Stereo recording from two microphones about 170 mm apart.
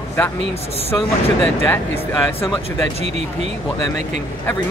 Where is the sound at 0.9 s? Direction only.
5° left (ahead or behind).